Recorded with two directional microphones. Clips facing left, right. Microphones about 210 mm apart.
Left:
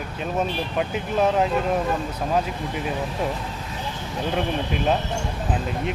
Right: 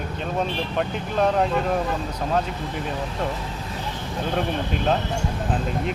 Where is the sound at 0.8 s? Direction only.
5° left (ahead or behind).